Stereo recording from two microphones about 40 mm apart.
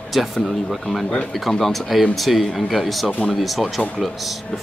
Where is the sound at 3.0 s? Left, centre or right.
Left.